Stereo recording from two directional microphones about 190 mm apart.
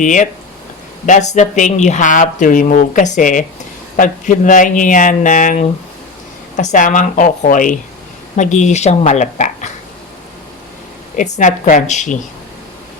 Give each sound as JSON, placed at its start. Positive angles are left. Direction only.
{"t": 0.0, "sound": "speech", "side_deg": 40}
{"t": 11.2, "sound": "speech", "side_deg": 40}